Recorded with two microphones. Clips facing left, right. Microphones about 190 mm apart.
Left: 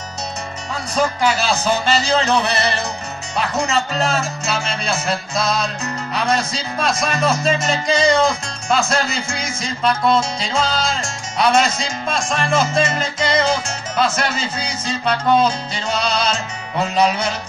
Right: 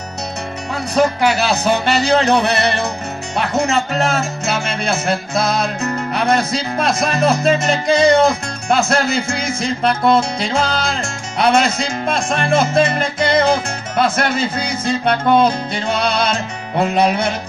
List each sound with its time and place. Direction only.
0.9 s speech: 60° right (ahead or behind)